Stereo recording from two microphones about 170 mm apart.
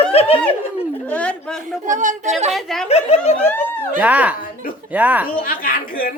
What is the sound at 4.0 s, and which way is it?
Speech, 10° right (ahead or behind).